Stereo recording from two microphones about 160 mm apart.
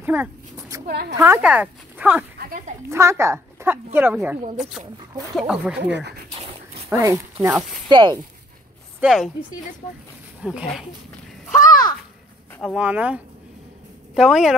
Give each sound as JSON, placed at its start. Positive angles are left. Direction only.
{"t": 0.0, "sound": "speech", "side_deg": -10}
{"t": 0.8, "sound": "a woman's voice", "side_deg": -80}
{"t": 1.2, "sound": "speech", "side_deg": -10}
{"t": 2.3, "sound": "speech", "side_deg": -65}
{"t": 2.9, "sound": "speech", "side_deg": -15}
{"t": 5.5, "sound": "speech", "side_deg": -5}
{"t": 6.9, "sound": "speech", "side_deg": -20}
{"t": 9.0, "sound": "a woman's voice", "side_deg": 0}
{"t": 10.4, "sound": "a woman's voice", "side_deg": -5}
{"t": 11.5, "sound": "a sound", "side_deg": 20}
{"t": 12.6, "sound": "a woman's voice", "side_deg": -5}